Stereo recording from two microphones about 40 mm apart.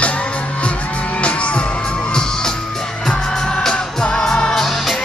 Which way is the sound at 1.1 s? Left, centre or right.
Left.